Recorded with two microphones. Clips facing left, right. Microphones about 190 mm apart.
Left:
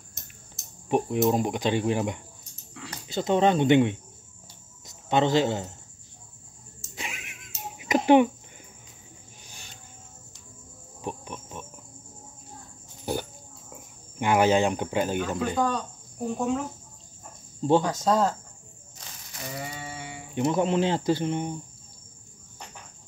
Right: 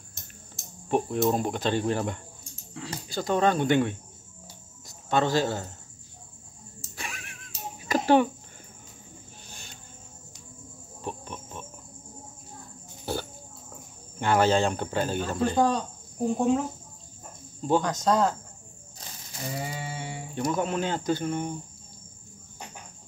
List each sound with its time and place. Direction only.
0.8 s speech: 10° left (ahead or behind)
7.0 s cat: 15° left (ahead or behind)
11.0 s cricket: 10° left (ahead or behind)
13.0 s a sound: 15° left (ahead or behind)
14.2 s speech: 15° left (ahead or behind)
15.5 s cricket: 30° right (ahead or behind)
17.8 s speech: 5° left (ahead or behind)
19.5 s a sound: 30° right (ahead or behind)
20.3 s speech: 25° left (ahead or behind)